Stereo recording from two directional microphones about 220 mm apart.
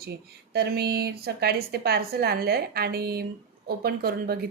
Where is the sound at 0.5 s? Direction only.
45° right (ahead or behind).